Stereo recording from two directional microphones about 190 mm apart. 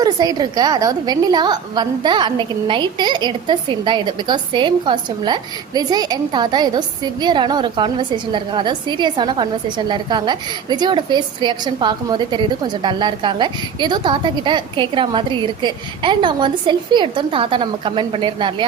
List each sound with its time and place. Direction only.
0.0 s a woman's voice: 20° right (ahead or behind)